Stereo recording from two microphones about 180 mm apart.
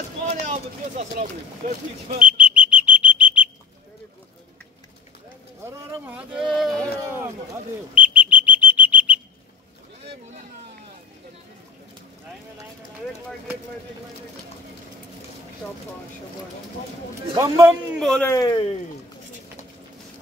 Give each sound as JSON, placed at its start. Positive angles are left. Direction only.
{"t": 0.3, "sound": "speech", "side_deg": -40}
{"t": 2.2, "sound": "bird", "side_deg": -5}
{"t": 5.7, "sound": "speech", "side_deg": -10}
{"t": 7.9, "sound": "bird", "side_deg": -10}
{"t": 17.4, "sound": "a man's voice", "side_deg": -15}
{"t": 17.9, "sound": "speech", "side_deg": 0}
{"t": 18.2, "sound": "speech", "side_deg": 20}